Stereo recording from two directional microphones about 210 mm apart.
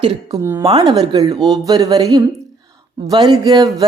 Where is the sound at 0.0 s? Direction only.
20° right (ahead or behind).